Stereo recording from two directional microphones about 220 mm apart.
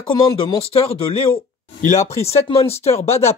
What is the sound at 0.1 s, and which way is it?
Speech, 20° left (ahead or behind).